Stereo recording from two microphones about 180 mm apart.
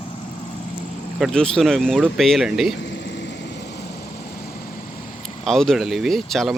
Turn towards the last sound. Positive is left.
turn(degrees=0)  # may be behind; listen again after turning